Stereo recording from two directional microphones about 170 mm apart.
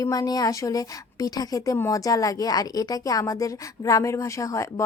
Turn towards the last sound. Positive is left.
turn(degrees=20)  # may be behind; listen again after turning